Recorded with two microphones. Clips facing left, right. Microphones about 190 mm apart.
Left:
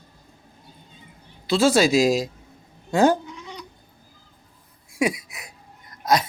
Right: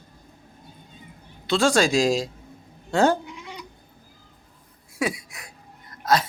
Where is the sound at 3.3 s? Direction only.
10° right (ahead or behind).